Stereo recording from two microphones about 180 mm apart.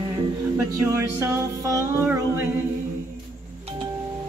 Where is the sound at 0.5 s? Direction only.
15° right (ahead or behind).